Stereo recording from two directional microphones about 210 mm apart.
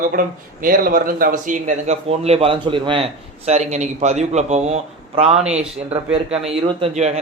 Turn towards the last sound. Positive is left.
turn(degrees=-30)  # may be behind; listen again after turning